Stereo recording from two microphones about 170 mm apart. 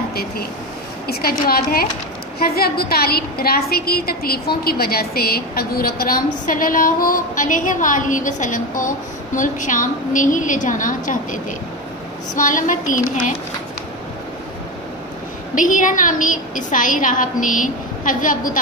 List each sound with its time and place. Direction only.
0.1 s speech: 65° left (ahead or behind)
1.5 s a woman's voice: 60° left (ahead or behind)
15.5 s a woman's voice: 50° left (ahead or behind)